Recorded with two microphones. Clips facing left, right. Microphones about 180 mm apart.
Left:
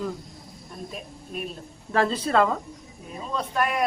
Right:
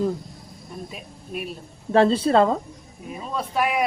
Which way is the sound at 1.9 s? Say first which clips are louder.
Right 5 dB; 30° right (ahead or behind).